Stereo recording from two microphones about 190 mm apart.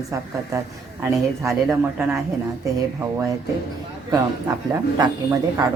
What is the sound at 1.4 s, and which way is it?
Speech, centre (ahead or behind).